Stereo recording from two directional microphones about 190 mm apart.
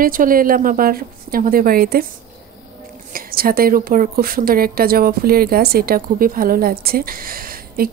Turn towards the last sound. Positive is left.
turn(degrees=-50)  # may be behind; listen again after turning